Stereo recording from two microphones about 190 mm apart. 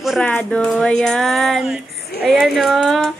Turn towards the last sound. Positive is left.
turn(degrees=0)  # may be behind; listen again after turning